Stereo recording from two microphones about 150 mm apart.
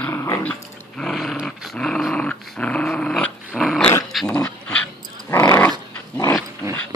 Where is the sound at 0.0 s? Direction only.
15° left (ahead or behind).